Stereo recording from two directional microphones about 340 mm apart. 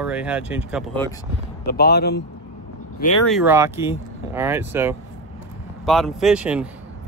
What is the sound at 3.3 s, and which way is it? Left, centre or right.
Speech, centre.